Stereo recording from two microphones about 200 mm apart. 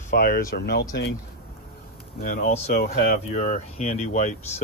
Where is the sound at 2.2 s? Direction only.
45° left (ahead or behind).